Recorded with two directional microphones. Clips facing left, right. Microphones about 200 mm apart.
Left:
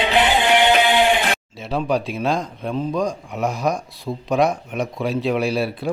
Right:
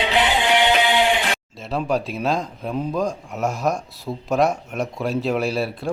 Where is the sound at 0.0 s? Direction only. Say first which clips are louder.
Left 2 dB; 50° left (ahead or behind).